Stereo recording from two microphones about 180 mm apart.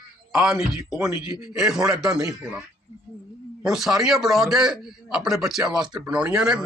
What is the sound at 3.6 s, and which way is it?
A man's voice, 5° right (ahead or behind).